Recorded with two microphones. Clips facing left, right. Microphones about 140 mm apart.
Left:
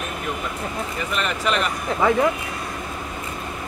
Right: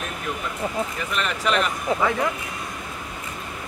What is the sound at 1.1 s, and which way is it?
Speech, centre (ahead or behind).